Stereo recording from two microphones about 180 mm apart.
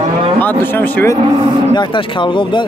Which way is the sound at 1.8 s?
25° left (ahead or behind).